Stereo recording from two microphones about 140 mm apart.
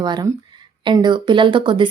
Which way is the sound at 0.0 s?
30° right (ahead or behind).